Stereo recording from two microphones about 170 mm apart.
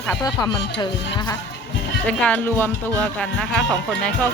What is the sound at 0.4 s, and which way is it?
Speech, 25° left (ahead or behind).